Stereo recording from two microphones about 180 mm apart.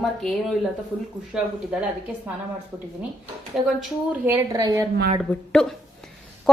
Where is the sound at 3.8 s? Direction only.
10° right (ahead or behind).